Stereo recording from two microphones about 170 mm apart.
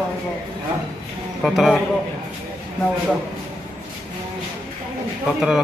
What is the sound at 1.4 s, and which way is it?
Speech, centre (ahead or behind).